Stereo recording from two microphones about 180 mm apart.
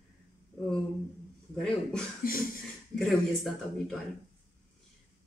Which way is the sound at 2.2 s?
55° left (ahead or behind).